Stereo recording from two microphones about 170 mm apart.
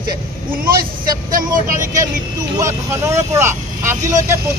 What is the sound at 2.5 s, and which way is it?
A man's voice, 15° right (ahead or behind).